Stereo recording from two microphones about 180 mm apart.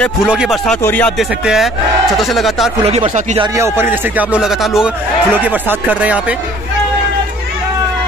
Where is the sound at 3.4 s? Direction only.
15° right (ahead or behind).